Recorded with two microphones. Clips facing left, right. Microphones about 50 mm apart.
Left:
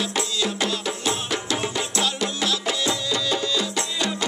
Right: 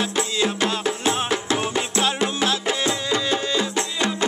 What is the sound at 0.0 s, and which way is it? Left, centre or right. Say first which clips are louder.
Music: right 3 dB; right.